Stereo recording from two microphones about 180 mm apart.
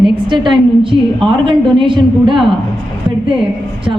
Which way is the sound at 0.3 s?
25° right (ahead or behind).